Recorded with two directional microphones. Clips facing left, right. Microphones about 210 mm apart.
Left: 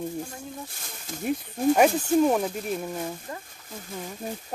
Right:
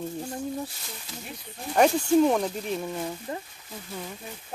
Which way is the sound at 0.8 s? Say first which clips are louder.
Left 9 dB; 50° left (ahead or behind).